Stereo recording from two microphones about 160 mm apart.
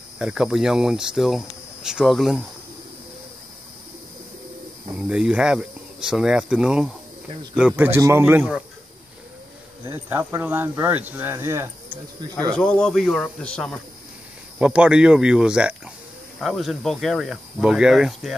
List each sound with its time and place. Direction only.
0.2 s speech: 5° right (ahead or behind)
5.0 s speech: 5° right (ahead or behind)
9.8 s speech: 15° right (ahead or behind)
12.5 s speech: 5° left (ahead or behind)
14.6 s speech: 5° right (ahead or behind)